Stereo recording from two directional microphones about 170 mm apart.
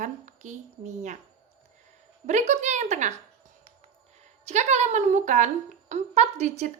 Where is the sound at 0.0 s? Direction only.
45° right (ahead or behind).